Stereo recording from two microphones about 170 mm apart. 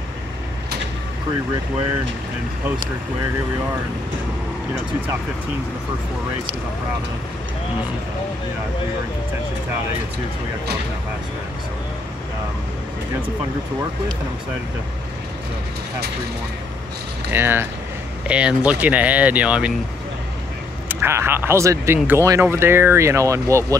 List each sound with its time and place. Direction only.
17.3 s speech: 15° right (ahead or behind)
20.9 s speech: 15° right (ahead or behind)